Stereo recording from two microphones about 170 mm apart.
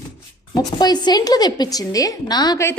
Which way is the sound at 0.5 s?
25° left (ahead or behind).